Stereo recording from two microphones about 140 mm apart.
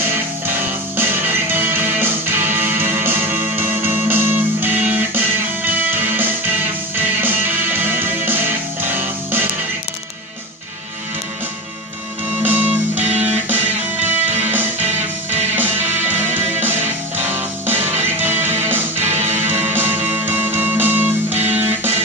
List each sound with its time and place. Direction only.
0.1 s music: 15° right (ahead or behind)
12.4 s music: 10° right (ahead or behind)
14.1 s music: 15° right (ahead or behind)
19.1 s music: 55° right (ahead or behind)
19.4 s music: 15° right (ahead or behind)